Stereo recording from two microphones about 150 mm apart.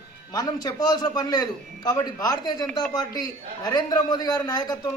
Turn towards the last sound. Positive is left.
turn(degrees=25)  # may be behind; listen again after turning